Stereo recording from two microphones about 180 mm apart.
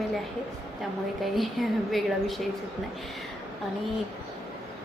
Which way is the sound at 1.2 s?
Centre (ahead or behind).